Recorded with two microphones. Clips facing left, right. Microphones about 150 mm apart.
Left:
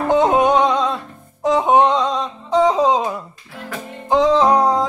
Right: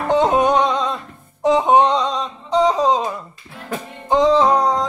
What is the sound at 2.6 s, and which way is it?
Music, 15° left (ahead or behind).